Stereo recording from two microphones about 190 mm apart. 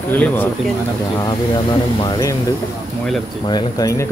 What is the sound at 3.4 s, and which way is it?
Speech, 20° left (ahead or behind).